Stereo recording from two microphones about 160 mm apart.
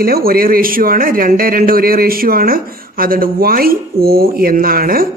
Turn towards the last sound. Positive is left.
turn(degrees=-65)  # may be behind; listen again after turning